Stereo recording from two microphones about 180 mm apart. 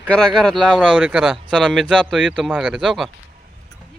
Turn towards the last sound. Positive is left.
turn(degrees=0)  # may be behind; listen again after turning